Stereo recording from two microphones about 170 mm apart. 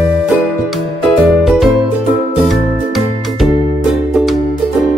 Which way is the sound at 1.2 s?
Centre (ahead or behind).